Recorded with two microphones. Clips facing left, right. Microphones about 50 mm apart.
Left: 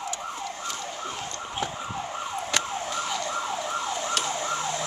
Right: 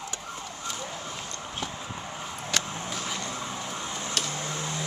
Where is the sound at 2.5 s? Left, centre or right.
Centre.